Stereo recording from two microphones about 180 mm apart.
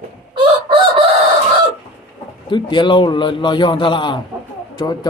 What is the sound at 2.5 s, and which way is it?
A man's voice, 25° left (ahead or behind).